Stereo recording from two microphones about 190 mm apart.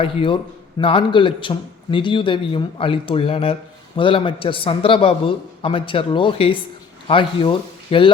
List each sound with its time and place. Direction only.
0.0 s a man's voice: 30° left (ahead or behind)